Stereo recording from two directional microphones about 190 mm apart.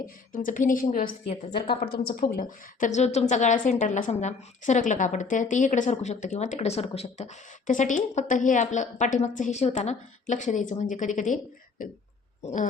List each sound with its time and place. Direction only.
0.3 s a woman's voice: 45° left (ahead or behind)
1.3 s a woman's voice: 30° left (ahead or behind)
2.3 s a woman's voice: 45° left (ahead or behind)
12.4 s plop: 35° left (ahead or behind)